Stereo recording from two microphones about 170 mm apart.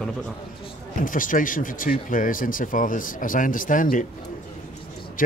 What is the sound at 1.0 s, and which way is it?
Speech, 50° left (ahead or behind).